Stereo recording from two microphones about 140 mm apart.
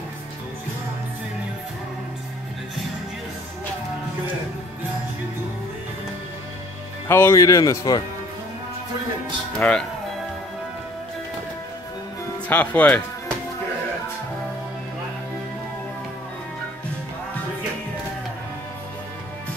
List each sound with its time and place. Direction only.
7.1 s speech: 15° left (ahead or behind)
9.6 s speech: 10° left (ahead or behind)
12.4 s speech: 10° left (ahead or behind)